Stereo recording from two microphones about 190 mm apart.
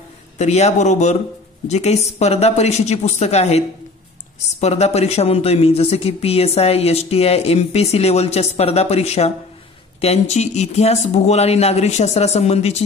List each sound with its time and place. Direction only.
0.4 s speech: 35° left (ahead or behind)